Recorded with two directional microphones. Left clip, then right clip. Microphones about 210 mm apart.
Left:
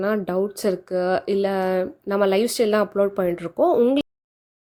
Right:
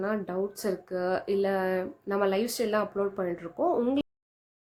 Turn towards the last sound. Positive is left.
turn(degrees=30)  # may be behind; listen again after turning